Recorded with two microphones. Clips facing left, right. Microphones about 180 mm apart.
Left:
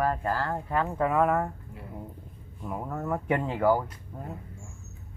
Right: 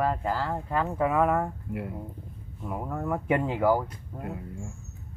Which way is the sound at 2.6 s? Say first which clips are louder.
Right 1 dB; 5° right (ahead or behind).